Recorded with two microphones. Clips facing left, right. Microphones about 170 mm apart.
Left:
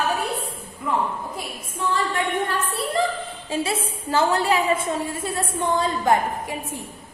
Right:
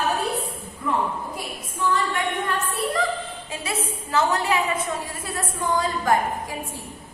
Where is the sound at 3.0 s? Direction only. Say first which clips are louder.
Left 3 dB; 30° left (ahead or behind).